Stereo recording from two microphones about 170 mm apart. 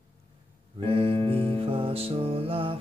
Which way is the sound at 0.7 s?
30° right (ahead or behind).